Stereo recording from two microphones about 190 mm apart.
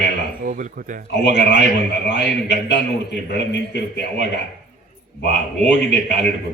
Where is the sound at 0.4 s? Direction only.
45° right (ahead or behind).